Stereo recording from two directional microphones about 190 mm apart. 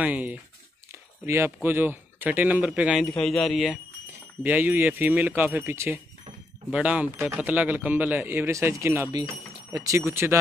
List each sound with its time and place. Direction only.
0.0 s speech: 10° right (ahead or behind)